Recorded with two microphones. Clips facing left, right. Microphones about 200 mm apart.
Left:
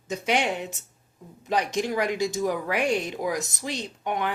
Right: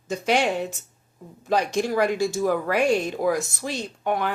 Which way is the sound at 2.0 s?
15° left (ahead or behind).